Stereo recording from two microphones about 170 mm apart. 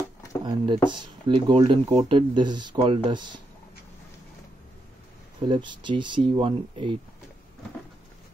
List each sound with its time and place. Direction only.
0.5 s speech: 25° right (ahead or behind)
5.5 s speech: 25° right (ahead or behind)